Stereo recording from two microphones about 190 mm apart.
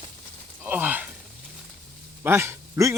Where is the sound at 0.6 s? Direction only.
10° right (ahead or behind).